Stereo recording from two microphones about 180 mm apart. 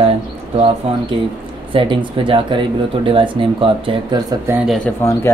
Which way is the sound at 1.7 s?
25° right (ahead or behind).